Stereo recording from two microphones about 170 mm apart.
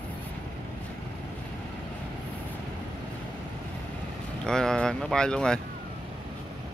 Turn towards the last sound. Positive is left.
turn(degrees=5)  # may be behind; listen again after turning